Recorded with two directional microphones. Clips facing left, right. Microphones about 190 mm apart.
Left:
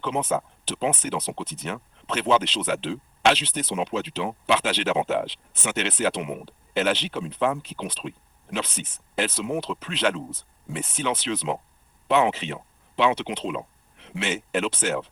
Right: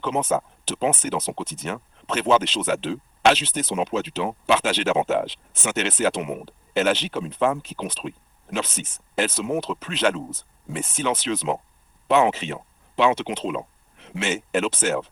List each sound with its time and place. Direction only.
0.0 s speech: 45° right (ahead or behind)